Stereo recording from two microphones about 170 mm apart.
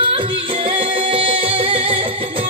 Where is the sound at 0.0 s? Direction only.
30° right (ahead or behind).